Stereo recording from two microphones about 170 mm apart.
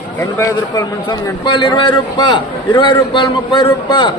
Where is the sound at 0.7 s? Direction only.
25° left (ahead or behind).